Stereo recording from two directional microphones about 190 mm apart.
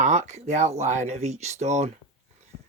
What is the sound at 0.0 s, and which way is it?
Speech, 40° right (ahead or behind).